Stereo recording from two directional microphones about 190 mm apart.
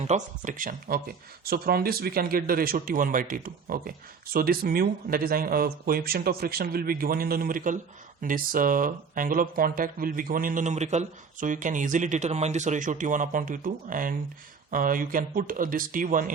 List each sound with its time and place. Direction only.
0.0 s speech: 40° right (ahead or behind)